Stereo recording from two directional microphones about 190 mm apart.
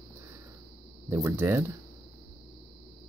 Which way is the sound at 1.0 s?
15° right (ahead or behind).